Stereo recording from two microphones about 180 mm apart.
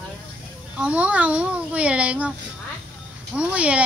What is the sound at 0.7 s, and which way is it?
A child's voice, 5° right (ahead or behind).